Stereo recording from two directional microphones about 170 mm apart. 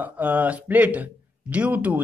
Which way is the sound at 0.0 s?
10° right (ahead or behind).